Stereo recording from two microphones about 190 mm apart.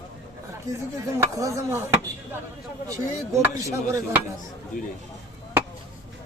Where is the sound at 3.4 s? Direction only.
10° right (ahead or behind).